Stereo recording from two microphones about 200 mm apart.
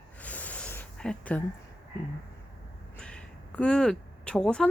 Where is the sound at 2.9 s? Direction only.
5° left (ahead or behind).